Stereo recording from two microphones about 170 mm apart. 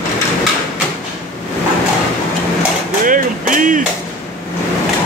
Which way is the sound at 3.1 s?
50° right (ahead or behind).